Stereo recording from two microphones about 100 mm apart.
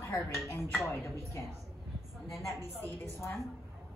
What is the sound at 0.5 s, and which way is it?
Speech, 20° left (ahead or behind).